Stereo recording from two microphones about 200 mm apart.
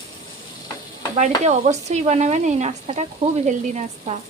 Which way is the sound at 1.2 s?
35° right (ahead or behind).